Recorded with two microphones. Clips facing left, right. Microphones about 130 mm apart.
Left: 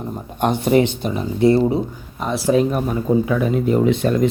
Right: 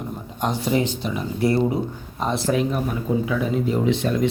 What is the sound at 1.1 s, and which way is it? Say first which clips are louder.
Speech: left 6 dB; 25° left (ahead or behind).